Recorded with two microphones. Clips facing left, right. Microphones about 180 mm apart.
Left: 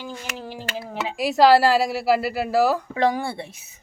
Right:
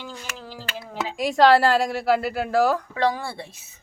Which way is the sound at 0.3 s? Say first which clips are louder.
Left 4 dB; 20° left (ahead or behind).